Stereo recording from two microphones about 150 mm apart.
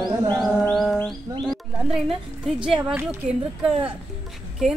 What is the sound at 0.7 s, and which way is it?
A woman's voice, 5° left (ahead or behind).